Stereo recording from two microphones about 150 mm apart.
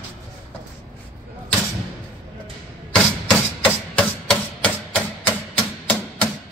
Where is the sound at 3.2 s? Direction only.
5° left (ahead or behind).